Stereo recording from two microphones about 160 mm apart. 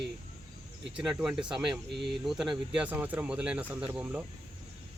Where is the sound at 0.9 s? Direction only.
5° right (ahead or behind).